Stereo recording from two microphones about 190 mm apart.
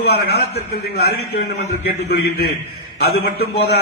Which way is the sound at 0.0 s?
60° left (ahead or behind).